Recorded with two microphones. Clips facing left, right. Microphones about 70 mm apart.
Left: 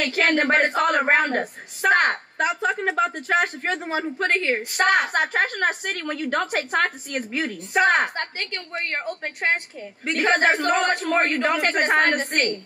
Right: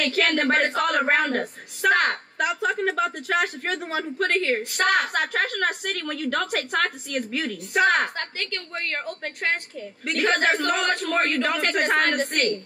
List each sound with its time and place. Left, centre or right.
0.0 s a woman's voice: left
2.4 s a woman's voice: centre
12.2 s a woman's voice: left